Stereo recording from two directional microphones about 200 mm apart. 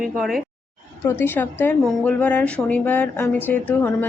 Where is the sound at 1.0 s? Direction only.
10° left (ahead or behind).